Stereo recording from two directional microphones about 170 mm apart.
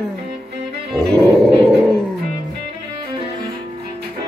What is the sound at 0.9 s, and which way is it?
Music, 5° left (ahead or behind).